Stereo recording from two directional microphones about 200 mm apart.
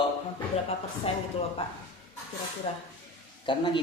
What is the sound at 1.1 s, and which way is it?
Speech, 30° left (ahead or behind).